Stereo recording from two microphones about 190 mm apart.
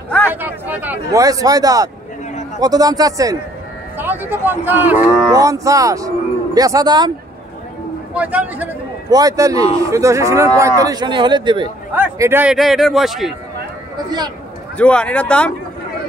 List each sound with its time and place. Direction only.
0.3 s a man's voice: 10° right (ahead or behind)
8.1 s speech: 10° right (ahead or behind)
9.1 s a man's voice: 20° right (ahead or behind)
11.9 s a man's voice: 10° right (ahead or behind)
14.8 s speech: 5° left (ahead or behind)